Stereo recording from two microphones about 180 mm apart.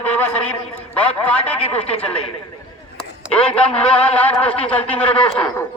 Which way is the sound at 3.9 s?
5° left (ahead or behind).